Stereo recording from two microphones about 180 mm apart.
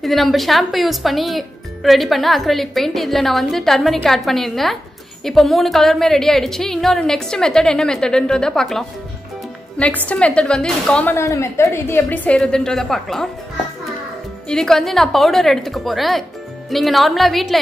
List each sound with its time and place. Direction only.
0.0 s speech: centre (ahead or behind)
10.0 s a woman's voice: 5° left (ahead or behind)
14.5 s speech: 5° left (ahead or behind)